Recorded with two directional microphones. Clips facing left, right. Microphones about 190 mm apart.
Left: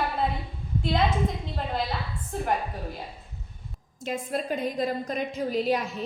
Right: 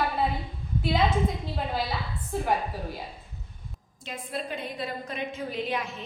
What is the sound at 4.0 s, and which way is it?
A woman's voice, 45° left (ahead or behind).